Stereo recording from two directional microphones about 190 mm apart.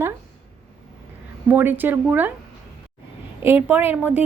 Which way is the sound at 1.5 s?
10° right (ahead or behind).